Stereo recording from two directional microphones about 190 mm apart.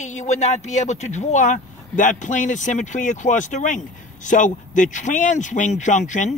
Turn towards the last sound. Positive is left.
turn(degrees=40)  # may be behind; listen again after turning